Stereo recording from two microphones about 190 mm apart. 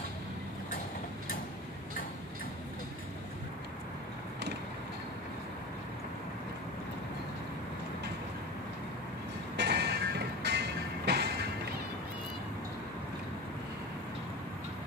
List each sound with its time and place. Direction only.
9.6 s music: 60° right (ahead or behind)